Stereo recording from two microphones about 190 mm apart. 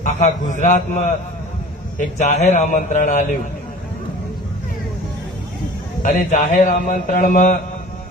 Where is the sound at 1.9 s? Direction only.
40° left (ahead or behind).